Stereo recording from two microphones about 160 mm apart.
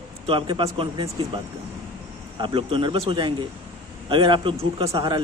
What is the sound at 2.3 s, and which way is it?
Speech, 30° right (ahead or behind).